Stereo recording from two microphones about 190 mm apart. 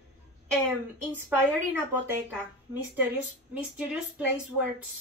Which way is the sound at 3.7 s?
5° right (ahead or behind).